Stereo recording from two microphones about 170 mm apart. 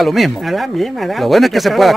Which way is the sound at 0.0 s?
Centre (ahead or behind).